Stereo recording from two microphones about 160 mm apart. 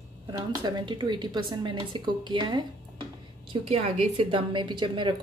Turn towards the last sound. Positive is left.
turn(degrees=-30)  # may be behind; listen again after turning